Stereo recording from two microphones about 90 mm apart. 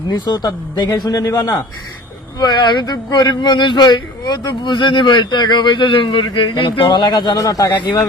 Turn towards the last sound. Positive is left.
turn(degrees=40)  # may be behind; listen again after turning